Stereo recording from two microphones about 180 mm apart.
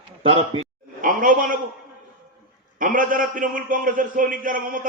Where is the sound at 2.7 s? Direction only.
50° right (ahead or behind).